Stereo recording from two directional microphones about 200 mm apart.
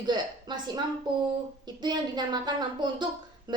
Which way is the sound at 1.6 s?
20° right (ahead or behind).